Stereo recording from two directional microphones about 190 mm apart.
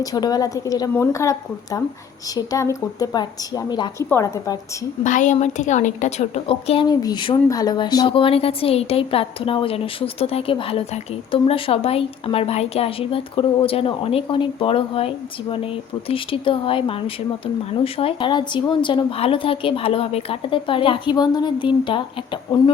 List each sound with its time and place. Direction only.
0.0 s a woman's voice: 20° left (ahead or behind)
5.0 s a woman's voice: 40° left (ahead or behind); by 22.0 s 25° left (ahead or behind)